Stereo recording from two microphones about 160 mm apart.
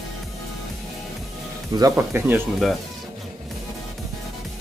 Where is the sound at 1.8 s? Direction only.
15° right (ahead or behind).